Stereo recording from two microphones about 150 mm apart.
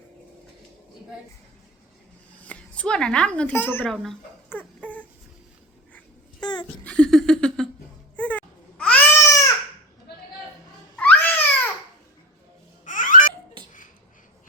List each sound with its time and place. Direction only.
2.4 s speech: 10° left (ahead or behind)
4.4 s dog: 10° left (ahead or behind)
6.4 s a sound: 30° left (ahead or behind)
6.8 s a sound: 5° left (ahead or behind)
8.1 s baby cry: 10° left (ahead or behind)
10.9 s babbling: 10° left (ahead or behind)
12.8 s babbling: 60° left (ahead or behind)